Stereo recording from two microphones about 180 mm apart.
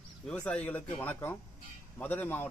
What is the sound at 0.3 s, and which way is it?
Speech, 10° left (ahead or behind).